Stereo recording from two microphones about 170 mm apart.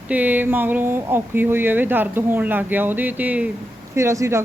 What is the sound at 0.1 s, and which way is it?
Speech, 10° right (ahead or behind).